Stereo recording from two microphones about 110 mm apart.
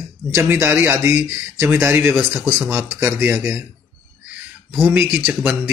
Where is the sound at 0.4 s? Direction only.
20° right (ahead or behind).